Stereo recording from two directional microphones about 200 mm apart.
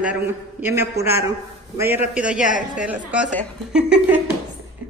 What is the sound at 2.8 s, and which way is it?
A man's voice, 5° right (ahead or behind).